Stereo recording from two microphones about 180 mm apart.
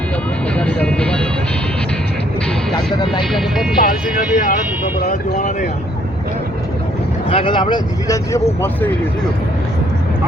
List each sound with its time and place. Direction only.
0.5 s music: 5° left (ahead or behind)
2.7 s music: 25° left (ahead or behind)
3.8 s speech: 50° left (ahead or behind)
7.3 s speech: 30° left (ahead or behind); by 8.9 s 15° left (ahead or behind)